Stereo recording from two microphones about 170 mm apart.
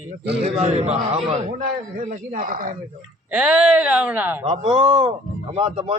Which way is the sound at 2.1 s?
45° right (ahead or behind).